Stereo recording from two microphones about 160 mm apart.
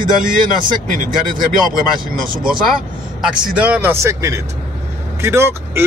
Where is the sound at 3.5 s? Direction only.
10° right (ahead or behind).